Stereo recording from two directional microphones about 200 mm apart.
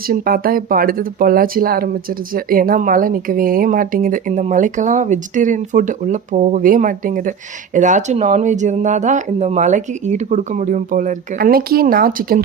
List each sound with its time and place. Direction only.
0.1 s speech: 45° right (ahead or behind)